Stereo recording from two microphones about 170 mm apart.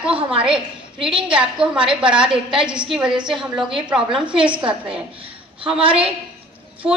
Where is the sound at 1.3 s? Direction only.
5° right (ahead or behind).